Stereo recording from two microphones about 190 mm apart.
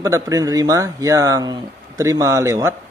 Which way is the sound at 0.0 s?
20° right (ahead or behind).